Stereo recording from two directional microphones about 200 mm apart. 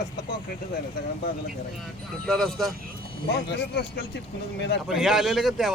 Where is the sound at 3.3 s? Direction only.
60° left (ahead or behind).